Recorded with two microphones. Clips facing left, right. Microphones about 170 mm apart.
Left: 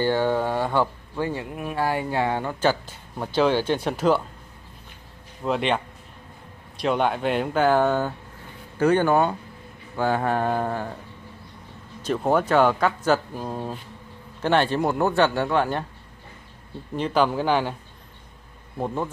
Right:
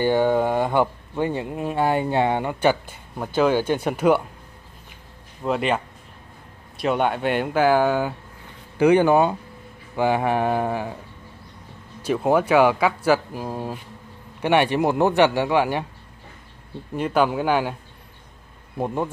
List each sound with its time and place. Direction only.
0.0 s speech: 15° right (ahead or behind)
5.4 s speech: centre (ahead or behind)
6.8 s speech: centre (ahead or behind)
12.0 s speech: 10° right (ahead or behind)
16.9 s speech: 5° right (ahead or behind)